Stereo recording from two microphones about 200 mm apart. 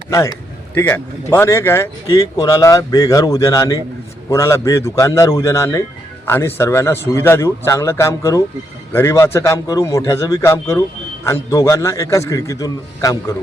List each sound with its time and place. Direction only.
0.7 s speech: 10° left (ahead or behind)